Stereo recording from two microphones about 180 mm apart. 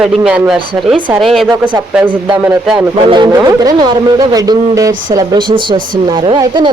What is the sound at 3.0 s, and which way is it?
Speech, 25° right (ahead or behind).